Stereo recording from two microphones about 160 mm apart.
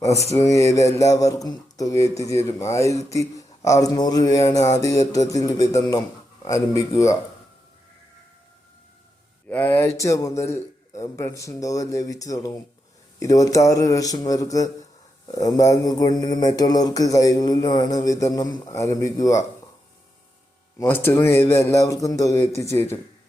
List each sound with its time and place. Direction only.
0.3 s speech: 20° left (ahead or behind)
9.5 s speech: 10° left (ahead or behind)
20.7 s speech: 15° left (ahead or behind)